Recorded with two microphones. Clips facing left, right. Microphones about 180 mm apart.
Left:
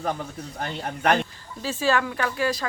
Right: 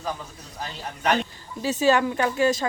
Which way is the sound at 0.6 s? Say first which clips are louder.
Left 2 dB; 60° left (ahead or behind).